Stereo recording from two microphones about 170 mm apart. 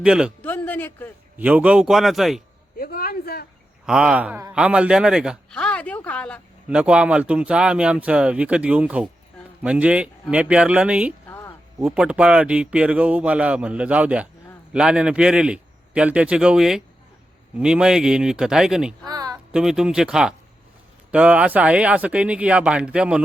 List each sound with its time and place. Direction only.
0.0 s a man's voice: 5° right (ahead or behind)
0.4 s speech: 10° left (ahead or behind)
1.4 s a man's voice: 10° right (ahead or behind)
2.7 s a sound: 60° left (ahead or behind)
3.8 s a man's voice: 5° right (ahead or behind)
6.7 s speech: 5° right (ahead or behind)
11.3 s a sound: 15° left (ahead or behind)
11.8 s a man's voice: 5° right (ahead or behind)
19.0 s a sound: 20° right (ahead or behind)
19.5 s a man's voice: 5° right (ahead or behind)